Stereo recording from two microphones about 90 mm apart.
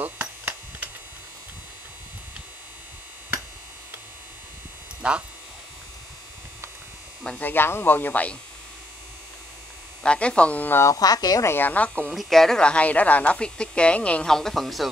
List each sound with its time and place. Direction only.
0.0 s hum: 20° right (ahead or behind)
5.0 s speech: 10° right (ahead or behind)
7.2 s speech: 20° left (ahead or behind)
10.0 s speech: 10° left (ahead or behind)
10.9 s a woman's voice: 45° left (ahead or behind)
11.4 s speech: 20° left (ahead or behind)
12.1 s speech: centre (ahead or behind)